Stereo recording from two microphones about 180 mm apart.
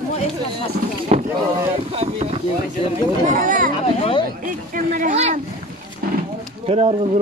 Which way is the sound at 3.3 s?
50° right (ahead or behind).